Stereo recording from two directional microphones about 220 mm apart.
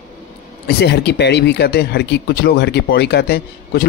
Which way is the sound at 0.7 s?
50° left (ahead or behind).